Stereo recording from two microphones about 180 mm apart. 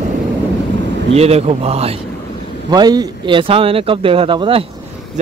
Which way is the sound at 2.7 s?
20° right (ahead or behind).